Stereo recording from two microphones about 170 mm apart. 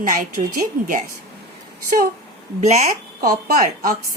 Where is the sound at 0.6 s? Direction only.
55° right (ahead or behind).